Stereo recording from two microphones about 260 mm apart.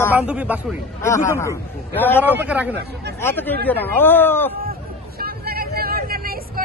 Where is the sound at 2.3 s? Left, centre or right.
Centre.